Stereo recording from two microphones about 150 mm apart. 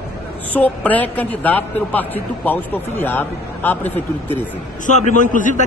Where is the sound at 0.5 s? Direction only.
10° left (ahead or behind).